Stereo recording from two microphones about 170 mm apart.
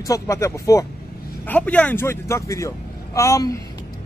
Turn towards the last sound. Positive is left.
turn(degrees=20)  # may be behind; listen again after turning